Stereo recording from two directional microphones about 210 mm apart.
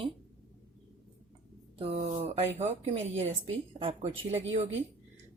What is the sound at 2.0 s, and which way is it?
Speech, 30° right (ahead or behind).